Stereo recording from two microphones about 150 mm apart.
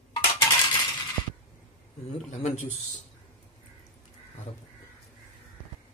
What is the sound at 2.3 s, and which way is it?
Speech, 50° left (ahead or behind).